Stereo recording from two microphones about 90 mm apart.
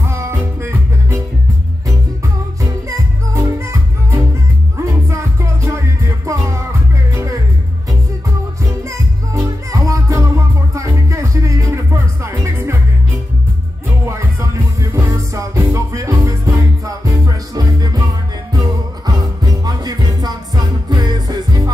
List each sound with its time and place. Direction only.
0.0 s music: 30° right (ahead or behind)
3.3 s music: 30° right (ahead or behind)
8.8 s music: 35° right (ahead or behind)
14.0 s music: 35° right (ahead or behind)